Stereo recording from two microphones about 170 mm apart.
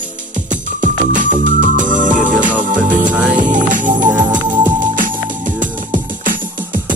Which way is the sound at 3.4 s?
50° right (ahead or behind).